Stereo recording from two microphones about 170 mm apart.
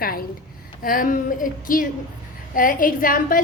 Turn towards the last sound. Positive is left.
turn(degrees=55)  # may be behind; listen again after turning